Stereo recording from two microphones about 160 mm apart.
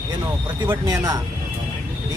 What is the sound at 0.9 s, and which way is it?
Speech, 20° right (ahead or behind).